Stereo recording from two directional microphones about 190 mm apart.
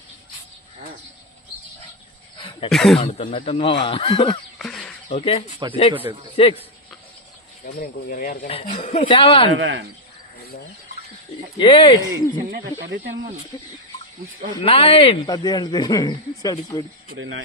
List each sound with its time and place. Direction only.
2.7 s speech: centre (ahead or behind)
3.1 s speech: 35° left (ahead or behind)
4.6 s a sound: 5° left (ahead or behind)
5.6 s a man's voice: 20° right (ahead or behind)
6.3 s speech: 30° left (ahead or behind)
7.6 s speech: 50° left (ahead or behind)
8.5 s speech: 30° left (ahead or behind)
9.6 s speech: 90° right
11.5 s speech: 25° left (ahead or behind)
12.1 s speech: 70° right (ahead or behind)
14.5 s speech: 25° left (ahead or behind)